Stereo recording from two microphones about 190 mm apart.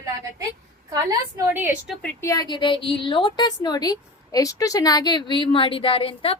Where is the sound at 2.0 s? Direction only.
15° left (ahead or behind).